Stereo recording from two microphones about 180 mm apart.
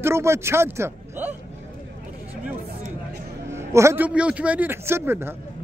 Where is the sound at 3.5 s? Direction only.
15° right (ahead or behind).